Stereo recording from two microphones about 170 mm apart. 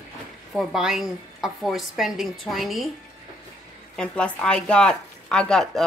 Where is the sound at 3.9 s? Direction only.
5° left (ahead or behind).